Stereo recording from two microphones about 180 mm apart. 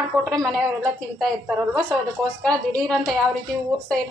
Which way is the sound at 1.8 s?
5° left (ahead or behind).